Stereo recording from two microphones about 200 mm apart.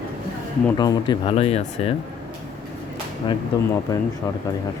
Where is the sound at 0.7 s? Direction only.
20° left (ahead or behind).